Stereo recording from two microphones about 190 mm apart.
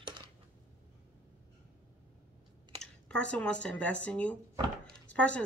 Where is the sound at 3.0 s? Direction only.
5° left (ahead or behind).